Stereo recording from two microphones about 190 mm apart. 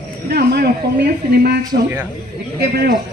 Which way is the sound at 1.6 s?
10° right (ahead or behind).